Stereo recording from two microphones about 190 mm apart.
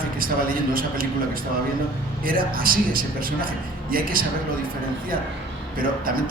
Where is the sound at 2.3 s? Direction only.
50° right (ahead or behind).